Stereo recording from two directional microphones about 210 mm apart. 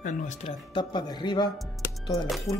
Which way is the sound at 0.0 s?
35° left (ahead or behind).